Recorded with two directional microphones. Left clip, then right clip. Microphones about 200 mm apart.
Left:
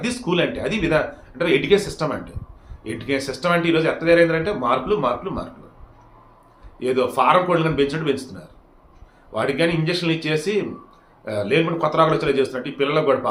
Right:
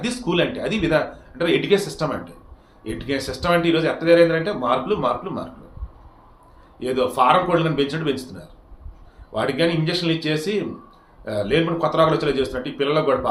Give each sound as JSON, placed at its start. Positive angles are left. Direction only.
{"t": 0.0, "sound": "speech", "side_deg": 5}
{"t": 6.7, "sound": "speech", "side_deg": 5}